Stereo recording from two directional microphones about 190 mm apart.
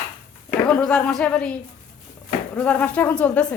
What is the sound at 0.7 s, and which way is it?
Speech, 5° left (ahead or behind).